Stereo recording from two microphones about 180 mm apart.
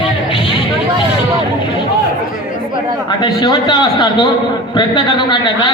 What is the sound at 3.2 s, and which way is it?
A man's voice, 25° left (ahead or behind).